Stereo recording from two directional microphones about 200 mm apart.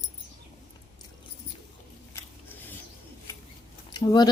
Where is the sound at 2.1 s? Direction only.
10° left (ahead or behind).